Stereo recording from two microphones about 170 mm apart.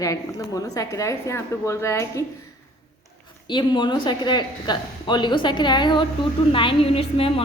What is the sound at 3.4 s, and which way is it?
A woman's voice, 25° left (ahead or behind).